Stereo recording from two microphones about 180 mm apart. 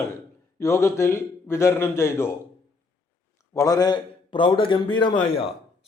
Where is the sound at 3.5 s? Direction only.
20° left (ahead or behind).